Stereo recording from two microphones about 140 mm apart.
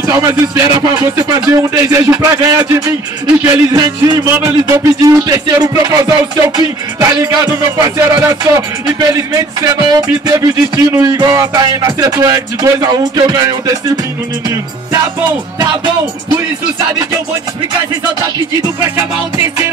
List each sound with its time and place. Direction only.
0.0 s speech: 25° right (ahead or behind)